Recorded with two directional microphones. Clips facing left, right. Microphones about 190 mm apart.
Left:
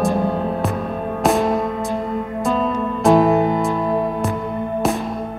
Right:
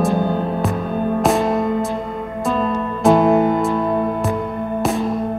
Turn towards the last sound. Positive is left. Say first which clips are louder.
# right 1 dB
turn(degrees=0)  # may be behind; listen again after turning